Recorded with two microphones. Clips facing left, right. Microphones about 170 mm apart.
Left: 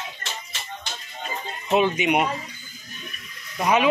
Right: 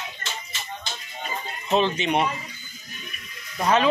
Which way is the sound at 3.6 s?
15° left (ahead or behind).